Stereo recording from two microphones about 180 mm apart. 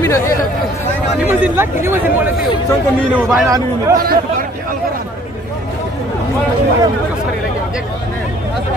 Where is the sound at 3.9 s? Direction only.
55° right (ahead or behind).